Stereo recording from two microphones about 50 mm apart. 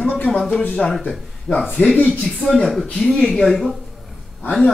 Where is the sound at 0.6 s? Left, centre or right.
Left.